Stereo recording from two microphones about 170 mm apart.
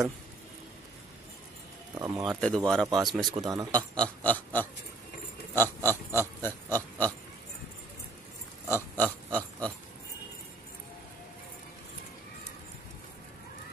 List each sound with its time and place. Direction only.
2.0 s speech: 20° right (ahead or behind)
2.2 s speech: 5° left (ahead or behind)
3.3 s speech: 20° right (ahead or behind)
3.7 s oink: 5° left (ahead or behind)
5.9 s pig: 10° left (ahead or behind)
8.7 s pig: 10° left (ahead or behind)